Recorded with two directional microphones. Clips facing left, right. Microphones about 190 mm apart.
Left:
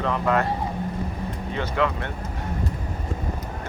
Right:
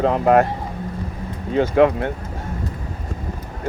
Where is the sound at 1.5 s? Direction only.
50° right (ahead or behind).